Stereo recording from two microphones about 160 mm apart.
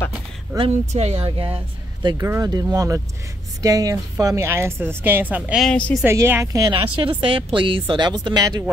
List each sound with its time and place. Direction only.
0.6 s speech: 40° right (ahead or behind)
2.0 s a woman's voice: 20° right (ahead or behind); by 6.0 s 5° left (ahead or behind)
6.0 s a woman's voice: 15° right (ahead or behind)